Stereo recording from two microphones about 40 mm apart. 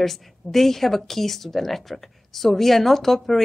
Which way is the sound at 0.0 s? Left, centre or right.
Centre.